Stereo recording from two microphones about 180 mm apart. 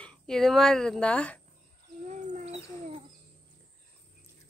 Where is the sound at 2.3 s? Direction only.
35° right (ahead or behind).